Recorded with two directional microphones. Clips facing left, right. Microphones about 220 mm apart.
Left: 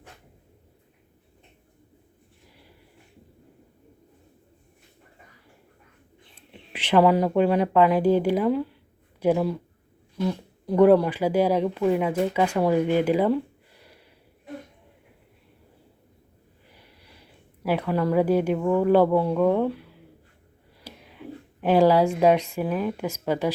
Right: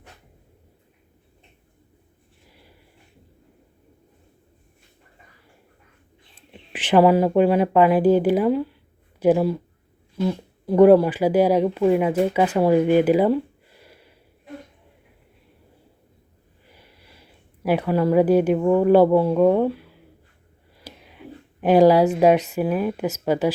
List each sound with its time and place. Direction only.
6.7 s speech: 10° right (ahead or behind)
17.6 s speech: 15° right (ahead or behind)
21.6 s speech: 15° right (ahead or behind)